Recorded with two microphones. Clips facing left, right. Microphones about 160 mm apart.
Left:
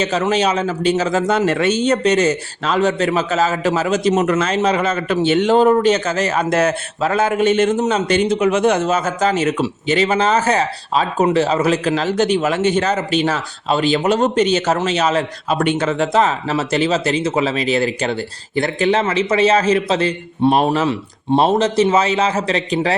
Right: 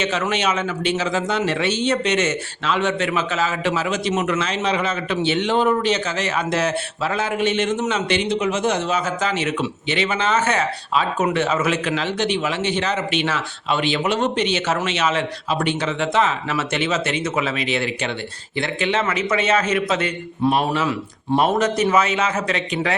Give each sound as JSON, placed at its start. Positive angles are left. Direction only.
{"t": 0.0, "sound": "a man's voice", "side_deg": 35}
{"t": 8.8, "sound": "a man's voice", "side_deg": 45}
{"t": 15.5, "sound": "a man's voice", "side_deg": 55}